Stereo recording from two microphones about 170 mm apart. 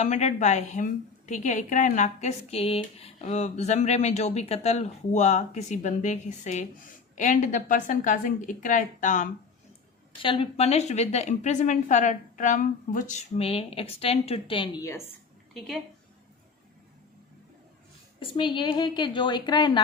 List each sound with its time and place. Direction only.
0.0 s speech: 45° left (ahead or behind)
10.2 s a woman's voice: 35° left (ahead or behind)
15.5 s a woman's voice: centre (ahead or behind)
18.2 s a woman's voice: 30° left (ahead or behind)